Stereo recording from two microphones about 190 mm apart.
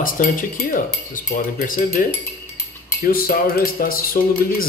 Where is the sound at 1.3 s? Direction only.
45° left (ahead or behind).